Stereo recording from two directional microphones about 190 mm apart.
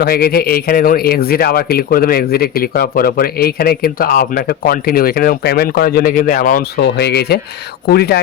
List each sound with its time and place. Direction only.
0.0 s speech: 55° left (ahead or behind)